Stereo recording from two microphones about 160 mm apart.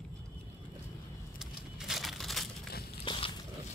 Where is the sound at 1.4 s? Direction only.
Centre (ahead or behind).